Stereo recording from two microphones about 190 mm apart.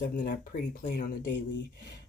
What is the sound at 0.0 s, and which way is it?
Speech, 45° left (ahead or behind).